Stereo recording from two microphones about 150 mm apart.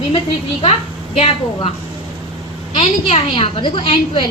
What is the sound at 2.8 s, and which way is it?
A woman's voice, 50° left (ahead or behind).